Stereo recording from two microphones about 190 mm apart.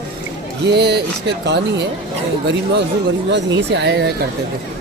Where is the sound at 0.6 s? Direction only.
60° right (ahead or behind).